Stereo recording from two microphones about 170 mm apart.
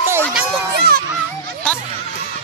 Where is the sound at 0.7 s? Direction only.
70° right (ahead or behind).